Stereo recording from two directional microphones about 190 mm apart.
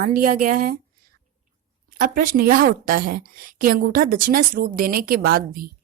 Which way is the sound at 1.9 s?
45° right (ahead or behind).